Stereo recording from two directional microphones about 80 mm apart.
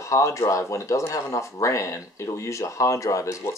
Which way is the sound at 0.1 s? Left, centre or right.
Left.